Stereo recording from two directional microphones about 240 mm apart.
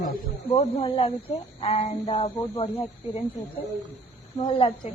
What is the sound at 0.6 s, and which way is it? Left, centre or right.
Speech, left.